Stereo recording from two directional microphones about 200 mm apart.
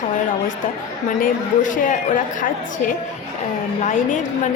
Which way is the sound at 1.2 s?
40° left (ahead or behind).